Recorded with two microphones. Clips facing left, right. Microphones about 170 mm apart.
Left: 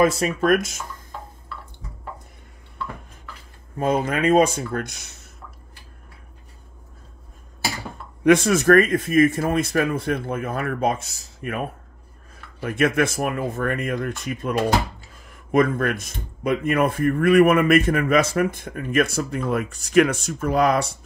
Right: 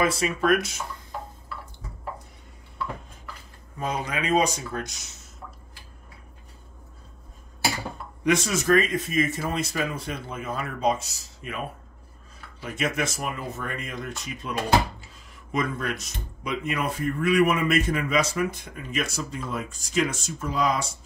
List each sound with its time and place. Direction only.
0.0 s speech: 45° left (ahead or behind)
3.7 s speech: 55° left (ahead or behind)
8.2 s speech: 55° left (ahead or behind)
15.5 s speech: 55° left (ahead or behind)